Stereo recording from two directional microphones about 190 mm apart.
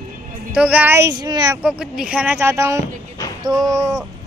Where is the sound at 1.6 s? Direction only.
5° right (ahead or behind).